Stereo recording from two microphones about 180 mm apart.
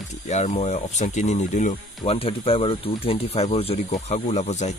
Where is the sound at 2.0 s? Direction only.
30° left (ahead or behind).